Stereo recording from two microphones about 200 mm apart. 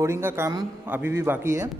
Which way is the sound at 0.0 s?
10° right (ahead or behind).